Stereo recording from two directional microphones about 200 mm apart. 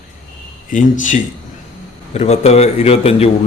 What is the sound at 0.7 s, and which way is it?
Speech, 40° left (ahead or behind).